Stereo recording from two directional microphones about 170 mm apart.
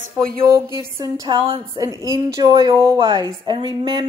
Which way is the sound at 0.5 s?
15° right (ahead or behind).